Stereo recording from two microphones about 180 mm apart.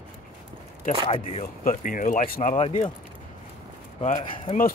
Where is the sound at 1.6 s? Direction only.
50° left (ahead or behind); by 2.9 s 35° left (ahead or behind).